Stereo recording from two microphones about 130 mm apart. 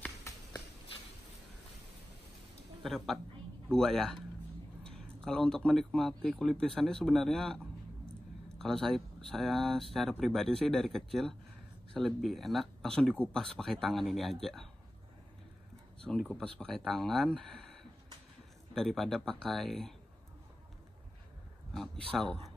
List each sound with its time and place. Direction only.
0.3 s a sound: 20° left (ahead or behind)
2.8 s speech: centre (ahead or behind)
16.0 s speech: 5° left (ahead or behind)
18.8 s speech: 5° left (ahead or behind)
21.7 s speech: 5° left (ahead or behind)